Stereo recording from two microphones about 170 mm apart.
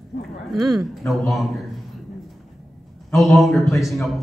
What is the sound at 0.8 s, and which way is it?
Speech, centre (ahead or behind).